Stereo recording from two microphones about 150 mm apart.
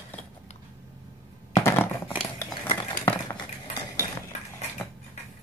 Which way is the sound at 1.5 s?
15° left (ahead or behind).